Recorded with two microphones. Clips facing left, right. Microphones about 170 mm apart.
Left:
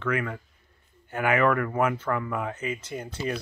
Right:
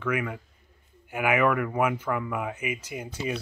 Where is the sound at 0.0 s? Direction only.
10° right (ahead or behind).